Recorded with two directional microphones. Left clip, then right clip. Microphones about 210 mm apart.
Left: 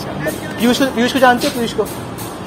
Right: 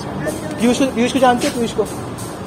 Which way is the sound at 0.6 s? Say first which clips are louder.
Left 2 dB; 5° left (ahead or behind).